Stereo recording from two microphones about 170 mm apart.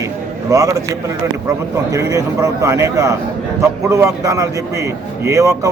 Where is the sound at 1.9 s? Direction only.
20° right (ahead or behind).